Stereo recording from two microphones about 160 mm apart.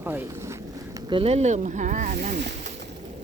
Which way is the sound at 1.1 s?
35° right (ahead or behind).